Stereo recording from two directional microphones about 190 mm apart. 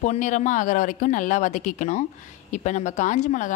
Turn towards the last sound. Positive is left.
turn(degrees=40)  # may be behind; listen again after turning